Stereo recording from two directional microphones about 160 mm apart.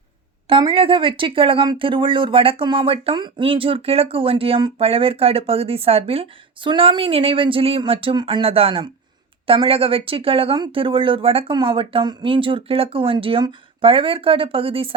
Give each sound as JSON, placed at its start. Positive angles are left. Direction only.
{"t": 0.4, "sound": "speech", "side_deg": -30}